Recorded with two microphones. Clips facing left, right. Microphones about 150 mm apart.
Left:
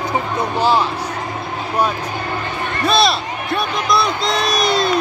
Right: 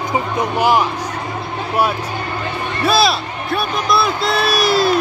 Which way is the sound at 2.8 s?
5° right (ahead or behind).